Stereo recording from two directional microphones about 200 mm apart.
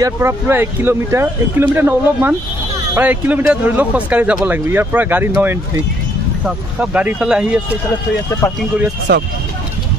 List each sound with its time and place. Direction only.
0.0 s speech: 15° right (ahead or behind)
9.1 s speech: 55° right (ahead or behind)